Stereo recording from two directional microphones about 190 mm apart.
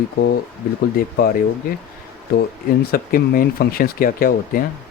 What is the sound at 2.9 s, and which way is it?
Speech, 50° left (ahead or behind).